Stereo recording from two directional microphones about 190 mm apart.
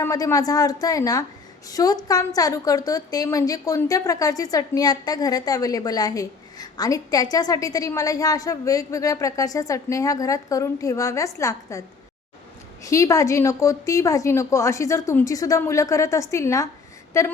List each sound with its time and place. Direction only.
0.0 s a woman's voice: 15° left (ahead or behind)
12.8 s a woman's voice: 15° left (ahead or behind)